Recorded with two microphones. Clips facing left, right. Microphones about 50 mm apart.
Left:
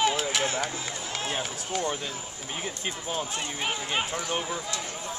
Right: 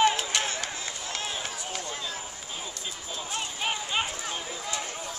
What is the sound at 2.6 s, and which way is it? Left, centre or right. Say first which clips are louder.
Speech: left 5 dB; left.